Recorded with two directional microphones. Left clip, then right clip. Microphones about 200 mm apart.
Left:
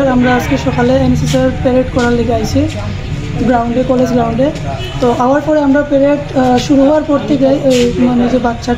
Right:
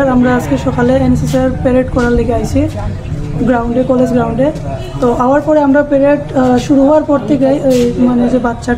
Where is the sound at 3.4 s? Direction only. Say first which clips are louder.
Even; 5° right (ahead or behind).